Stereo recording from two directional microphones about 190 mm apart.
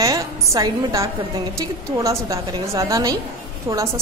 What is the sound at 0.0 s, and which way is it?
A woman's voice, 15° right (ahead or behind).